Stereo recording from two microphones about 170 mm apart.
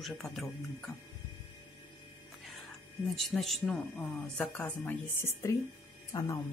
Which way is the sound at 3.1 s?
Centre (ahead or behind).